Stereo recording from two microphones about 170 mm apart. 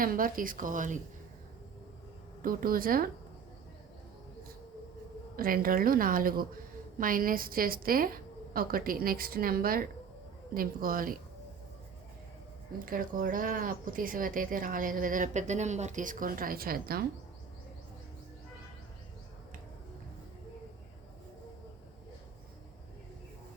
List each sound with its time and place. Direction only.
0.0 s speech: 55° right (ahead or behind)
2.4 s a woman's voice: 55° right (ahead or behind)
5.4 s a woman's voice: 55° right (ahead or behind)
12.8 s speech: 55° right (ahead or behind)